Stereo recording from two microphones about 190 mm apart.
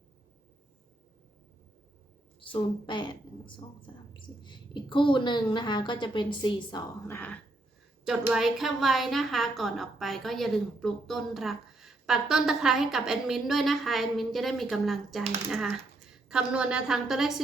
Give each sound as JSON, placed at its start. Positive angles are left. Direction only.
{"t": 2.5, "sound": "a woman's voice", "side_deg": 25}
{"t": 8.0, "sound": "a woman's voice", "side_deg": 0}